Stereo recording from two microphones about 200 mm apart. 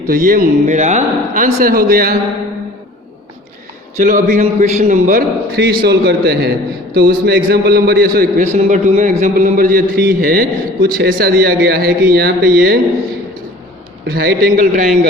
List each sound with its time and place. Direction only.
0.1 s a man's voice: 45° right (ahead or behind)
3.9 s a man's voice: 40° right (ahead or behind)
14.1 s a man's voice: 50° right (ahead or behind)